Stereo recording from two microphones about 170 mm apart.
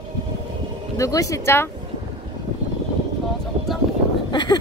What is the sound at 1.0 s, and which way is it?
Speech, 20° left (ahead or behind).